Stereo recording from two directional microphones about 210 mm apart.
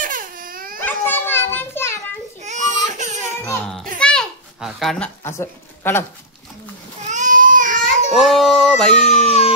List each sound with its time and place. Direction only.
0.0 s baby cry: 40° right (ahead or behind)
0.7 s children playing: 10° left (ahead or behind)
2.4 s baby cry: 35° right (ahead or behind)
3.4 s a sound: 5° left (ahead or behind)
7.1 s baby cry: 35° right (ahead or behind)
8.1 s a sound: centre (ahead or behind)